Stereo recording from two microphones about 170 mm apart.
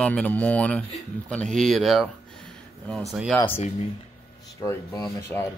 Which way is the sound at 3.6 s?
35° left (ahead or behind).